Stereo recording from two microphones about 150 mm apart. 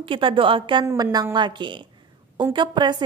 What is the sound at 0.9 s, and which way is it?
A woman's voice, 25° right (ahead or behind).